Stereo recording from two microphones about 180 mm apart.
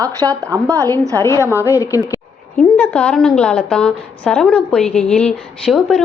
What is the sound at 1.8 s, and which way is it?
Speech, 20° left (ahead or behind).